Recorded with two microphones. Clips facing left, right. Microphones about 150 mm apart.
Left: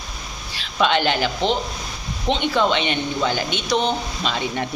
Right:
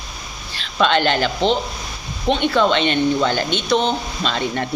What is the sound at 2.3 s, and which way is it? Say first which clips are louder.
Speech: right 3 dB; 15° left (ahead or behind).